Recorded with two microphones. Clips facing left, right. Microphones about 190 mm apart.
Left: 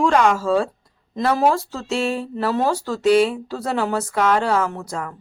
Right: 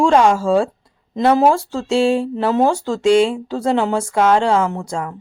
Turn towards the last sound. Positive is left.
turn(degrees=-25)  # may be behind; listen again after turning